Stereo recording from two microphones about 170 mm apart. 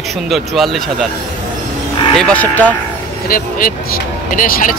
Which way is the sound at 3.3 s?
55° left (ahead or behind).